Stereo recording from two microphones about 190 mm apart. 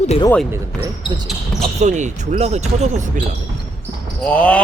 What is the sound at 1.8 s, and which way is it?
Speech, 40° right (ahead or behind).